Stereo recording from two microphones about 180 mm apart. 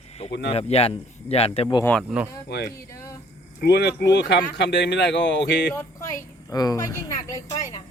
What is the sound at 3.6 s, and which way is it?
Speech, 65° left (ahead or behind).